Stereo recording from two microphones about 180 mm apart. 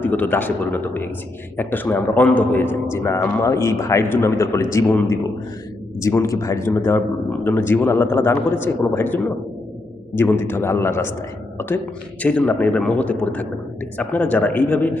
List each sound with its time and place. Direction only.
0.0 s speech: 10° left (ahead or behind)
12.2 s speech: 5° left (ahead or behind)